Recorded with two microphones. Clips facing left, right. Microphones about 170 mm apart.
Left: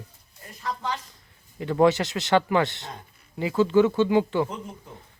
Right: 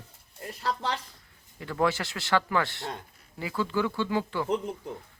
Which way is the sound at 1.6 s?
20° left (ahead or behind).